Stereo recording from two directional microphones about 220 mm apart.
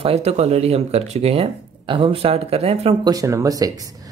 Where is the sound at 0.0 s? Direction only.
30° right (ahead or behind).